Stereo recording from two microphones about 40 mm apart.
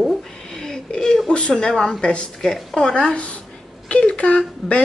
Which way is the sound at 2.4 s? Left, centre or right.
Centre.